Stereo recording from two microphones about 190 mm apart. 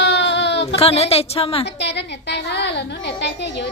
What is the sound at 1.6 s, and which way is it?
A woman's voice, 65° left (ahead or behind).